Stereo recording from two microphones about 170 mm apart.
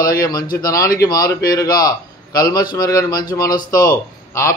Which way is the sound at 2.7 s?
20° left (ahead or behind).